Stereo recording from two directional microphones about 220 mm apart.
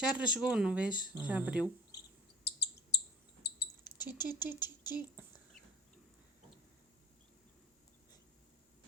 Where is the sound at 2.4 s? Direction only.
50° left (ahead or behind).